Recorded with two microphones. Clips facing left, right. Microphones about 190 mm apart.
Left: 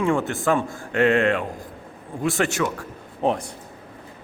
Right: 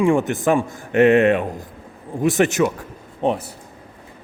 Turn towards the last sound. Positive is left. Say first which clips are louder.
# right 2 dB
turn(degrees=0)  # may be behind; listen again after turning